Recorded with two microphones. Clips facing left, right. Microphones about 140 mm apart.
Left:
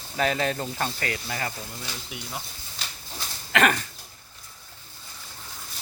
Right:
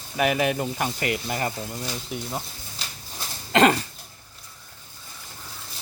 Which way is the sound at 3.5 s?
25° right (ahead or behind).